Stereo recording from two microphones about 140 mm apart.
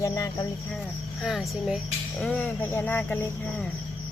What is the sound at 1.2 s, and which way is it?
Speech, centre (ahead or behind).